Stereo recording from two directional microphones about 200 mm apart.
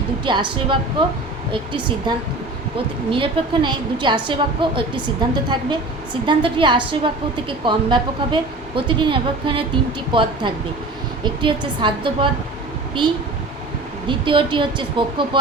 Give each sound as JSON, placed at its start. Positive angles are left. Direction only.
{"t": 0.3, "sound": "a woman's voice", "side_deg": -25}
{"t": 2.1, "sound": "a woman's voice", "side_deg": -20}
{"t": 14.1, "sound": "a woman's voice", "side_deg": -25}